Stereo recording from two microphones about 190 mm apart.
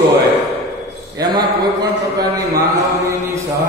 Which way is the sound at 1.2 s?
20° right (ahead or behind).